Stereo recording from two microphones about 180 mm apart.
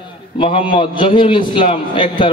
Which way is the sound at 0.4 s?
30° left (ahead or behind).